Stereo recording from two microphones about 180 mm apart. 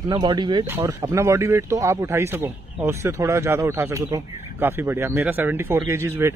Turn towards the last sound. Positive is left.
turn(degrees=-15)  # may be behind; listen again after turning